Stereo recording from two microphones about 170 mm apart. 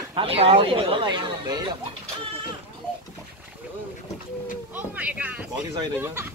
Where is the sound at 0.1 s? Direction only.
35° right (ahead or behind).